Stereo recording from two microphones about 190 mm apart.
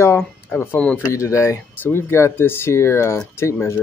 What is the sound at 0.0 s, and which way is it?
Speech, 10° left (ahead or behind).